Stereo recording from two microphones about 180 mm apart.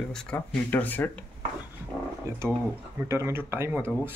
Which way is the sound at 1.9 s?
10° left (ahead or behind).